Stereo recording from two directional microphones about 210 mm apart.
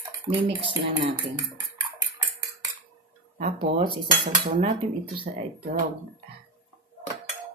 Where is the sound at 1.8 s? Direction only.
15° right (ahead or behind).